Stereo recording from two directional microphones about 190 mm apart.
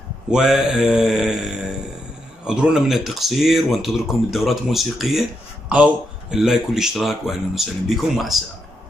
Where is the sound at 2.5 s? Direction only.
5° right (ahead or behind).